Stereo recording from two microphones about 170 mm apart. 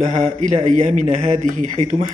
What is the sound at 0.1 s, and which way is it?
A man's voice, 45° right (ahead or behind).